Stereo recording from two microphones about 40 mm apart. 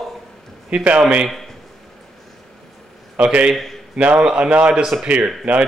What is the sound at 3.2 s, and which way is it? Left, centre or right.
A man's voice, right.